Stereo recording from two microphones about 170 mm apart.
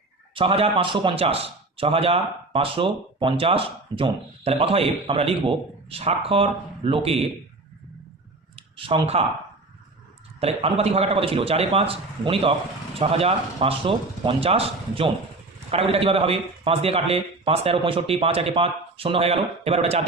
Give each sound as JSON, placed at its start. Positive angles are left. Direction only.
{"t": 0.3, "sound": "a man's voice", "side_deg": -35}
{"t": 8.5, "sound": "speech", "side_deg": -30}
{"t": 10.4, "sound": "a man's voice", "side_deg": -35}